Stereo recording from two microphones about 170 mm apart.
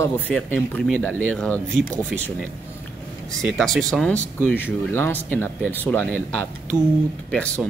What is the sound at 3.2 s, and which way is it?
Speech, centre (ahead or behind).